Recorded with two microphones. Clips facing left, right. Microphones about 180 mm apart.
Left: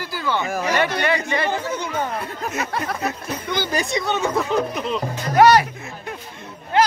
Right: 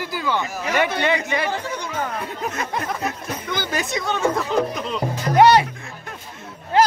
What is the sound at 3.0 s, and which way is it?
A man's voice, centre (ahead or behind).